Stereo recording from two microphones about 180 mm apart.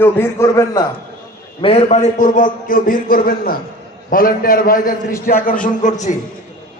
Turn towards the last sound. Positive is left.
turn(degrees=45)  # may be behind; listen again after turning